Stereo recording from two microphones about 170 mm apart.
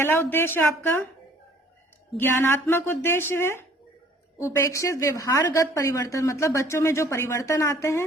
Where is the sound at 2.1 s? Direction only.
15° left (ahead or behind).